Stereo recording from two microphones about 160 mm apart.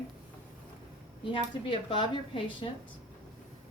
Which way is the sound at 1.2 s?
30° left (ahead or behind).